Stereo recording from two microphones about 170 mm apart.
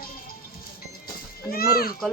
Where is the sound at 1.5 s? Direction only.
60° left (ahead or behind).